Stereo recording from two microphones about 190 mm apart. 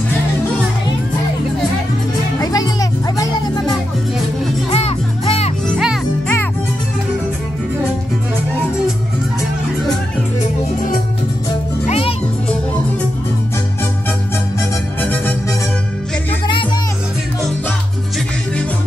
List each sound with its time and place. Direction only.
2.3 s music: 20° left (ahead or behind)
4.6 s music: 35° left (ahead or behind)
5.7 s music: centre (ahead or behind)
11.9 s music: 30° left (ahead or behind)
15.0 s music: 10° left (ahead or behind)